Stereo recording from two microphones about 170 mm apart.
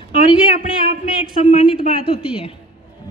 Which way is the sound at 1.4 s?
40° left (ahead or behind).